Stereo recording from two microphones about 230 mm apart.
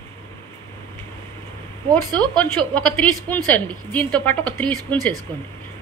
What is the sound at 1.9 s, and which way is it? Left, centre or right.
Speech, centre.